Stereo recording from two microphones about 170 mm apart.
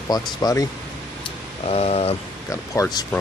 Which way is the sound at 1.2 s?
35° left (ahead or behind).